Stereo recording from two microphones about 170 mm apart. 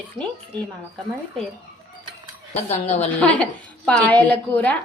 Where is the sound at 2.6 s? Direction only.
40° left (ahead or behind).